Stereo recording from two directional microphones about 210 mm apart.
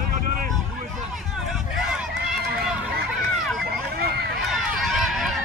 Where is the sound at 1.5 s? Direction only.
5° right (ahead or behind).